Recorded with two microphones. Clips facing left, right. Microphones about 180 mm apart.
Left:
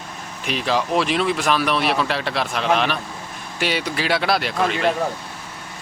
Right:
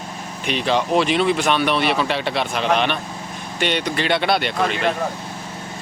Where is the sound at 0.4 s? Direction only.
Centre (ahead or behind).